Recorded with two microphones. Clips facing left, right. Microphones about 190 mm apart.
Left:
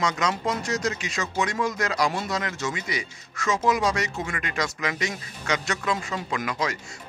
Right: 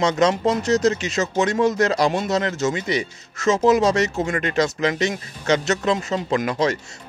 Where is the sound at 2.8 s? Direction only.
25° right (ahead or behind).